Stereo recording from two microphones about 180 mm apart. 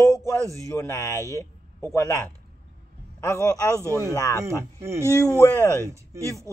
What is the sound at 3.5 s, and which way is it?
Speech, 15° right (ahead or behind).